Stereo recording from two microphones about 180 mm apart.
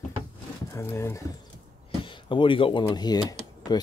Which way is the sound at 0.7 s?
15° left (ahead or behind).